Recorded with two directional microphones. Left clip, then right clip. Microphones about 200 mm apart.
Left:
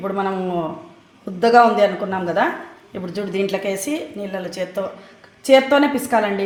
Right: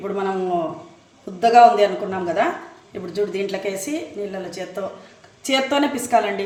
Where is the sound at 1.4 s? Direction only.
30° left (ahead or behind).